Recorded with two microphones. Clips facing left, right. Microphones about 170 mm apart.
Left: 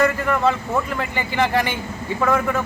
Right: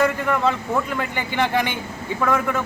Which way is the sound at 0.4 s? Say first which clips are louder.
Left 1 dB; 5° left (ahead or behind).